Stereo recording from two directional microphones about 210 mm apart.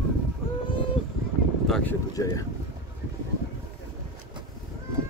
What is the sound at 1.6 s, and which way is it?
Speech, centre (ahead or behind).